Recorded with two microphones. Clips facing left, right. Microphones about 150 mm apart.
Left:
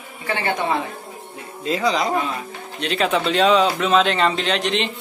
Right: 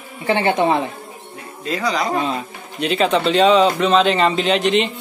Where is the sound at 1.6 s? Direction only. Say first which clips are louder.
Left 1 dB; 20° left (ahead or behind).